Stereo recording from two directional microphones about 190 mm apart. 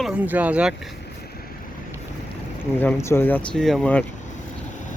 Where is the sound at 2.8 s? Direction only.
10° left (ahead or behind).